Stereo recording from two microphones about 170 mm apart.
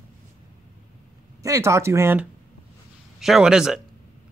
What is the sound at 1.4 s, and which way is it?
Speech, 15° right (ahead or behind).